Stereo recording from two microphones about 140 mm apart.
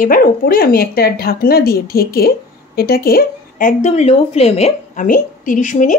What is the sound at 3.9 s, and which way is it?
Speech, 50° left (ahead or behind).